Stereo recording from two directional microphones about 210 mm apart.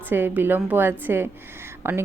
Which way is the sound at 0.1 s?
10° right (ahead or behind).